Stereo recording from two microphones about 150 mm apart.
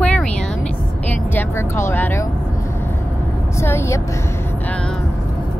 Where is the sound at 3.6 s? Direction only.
15° left (ahead or behind).